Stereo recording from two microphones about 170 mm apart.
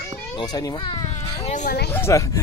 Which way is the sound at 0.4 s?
25° left (ahead or behind).